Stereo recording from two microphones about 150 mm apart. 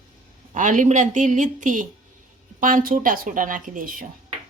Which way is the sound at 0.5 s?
55° right (ahead or behind).